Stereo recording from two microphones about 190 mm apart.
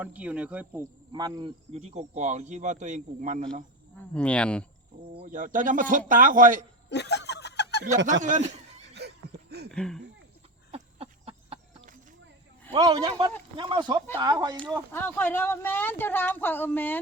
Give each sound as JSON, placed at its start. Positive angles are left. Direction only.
{"t": 0.0, "sound": "speech", "side_deg": -5}
{"t": 1.1, "sound": "a man's voice", "side_deg": -20}
{"t": 1.7, "sound": "speech", "side_deg": -35}
{"t": 4.1, "sound": "speech", "side_deg": 5}
{"t": 5.1, "sound": "a man's voice", "side_deg": -40}
{"t": 6.9, "sound": "snicker", "side_deg": 65}
{"t": 8.2, "sound": "speech", "side_deg": -40}
{"t": 9.0, "sound": "a sound", "side_deg": -60}
{"t": 9.7, "sound": "speech", "side_deg": 5}
{"t": 10.7, "sound": "a sound", "side_deg": -30}
{"t": 12.7, "sound": "a man's voice", "side_deg": -20}
{"t": 14.9, "sound": "speech", "side_deg": 10}